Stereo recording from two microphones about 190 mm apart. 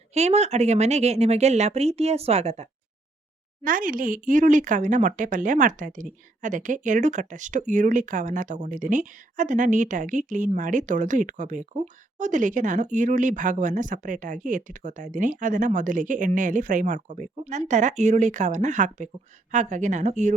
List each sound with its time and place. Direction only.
0.1 s speech: 35° right (ahead or behind)
3.6 s speech: 45° right (ahead or behind)